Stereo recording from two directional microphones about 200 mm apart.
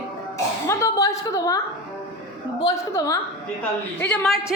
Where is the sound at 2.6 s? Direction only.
15° left (ahead or behind).